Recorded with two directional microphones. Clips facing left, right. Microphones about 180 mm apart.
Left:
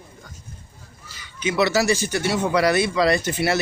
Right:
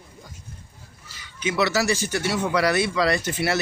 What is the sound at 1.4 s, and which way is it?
Speech, 25° left (ahead or behind).